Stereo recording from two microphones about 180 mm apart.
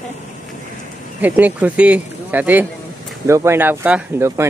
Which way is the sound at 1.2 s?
10° right (ahead or behind).